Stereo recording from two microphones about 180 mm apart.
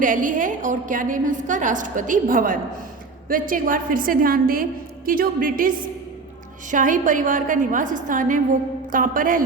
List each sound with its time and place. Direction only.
0.0 s a woman's voice: 45° right (ahead or behind)